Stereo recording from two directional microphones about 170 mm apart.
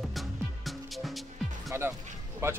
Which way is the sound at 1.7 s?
15° right (ahead or behind).